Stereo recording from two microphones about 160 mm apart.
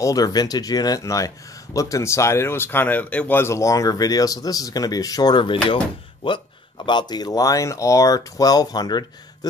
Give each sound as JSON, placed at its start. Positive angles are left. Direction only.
{"t": 0.0, "sound": "speech", "side_deg": 20}